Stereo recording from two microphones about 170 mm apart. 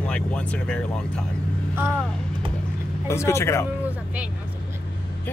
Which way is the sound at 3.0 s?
15° left (ahead or behind).